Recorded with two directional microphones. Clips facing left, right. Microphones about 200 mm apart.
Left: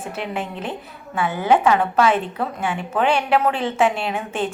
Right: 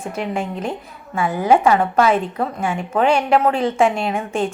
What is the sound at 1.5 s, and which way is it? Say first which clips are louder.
Speech: right 2 dB; 10° right (ahead or behind).